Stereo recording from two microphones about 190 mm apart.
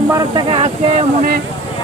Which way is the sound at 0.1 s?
20° right (ahead or behind).